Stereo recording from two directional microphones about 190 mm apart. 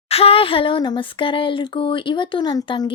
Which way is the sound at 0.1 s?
30° left (ahead or behind).